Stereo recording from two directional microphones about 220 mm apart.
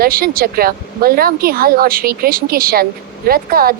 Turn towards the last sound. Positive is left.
turn(degrees=-45)  # may be behind; listen again after turning